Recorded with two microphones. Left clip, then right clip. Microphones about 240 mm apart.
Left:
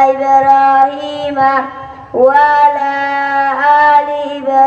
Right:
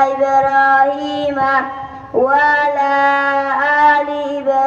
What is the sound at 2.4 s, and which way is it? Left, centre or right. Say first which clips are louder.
Music: left 4 dB; left.